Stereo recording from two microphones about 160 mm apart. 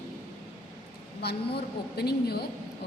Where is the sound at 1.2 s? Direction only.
85° left.